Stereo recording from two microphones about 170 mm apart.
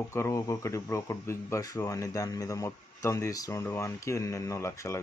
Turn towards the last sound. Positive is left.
turn(degrees=15)  # may be behind; listen again after turning